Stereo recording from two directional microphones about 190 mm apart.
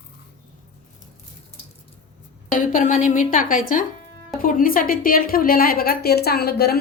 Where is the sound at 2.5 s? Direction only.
45° left (ahead or behind).